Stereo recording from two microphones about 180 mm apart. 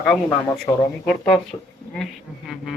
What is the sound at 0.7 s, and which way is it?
Speech, 20° left (ahead or behind).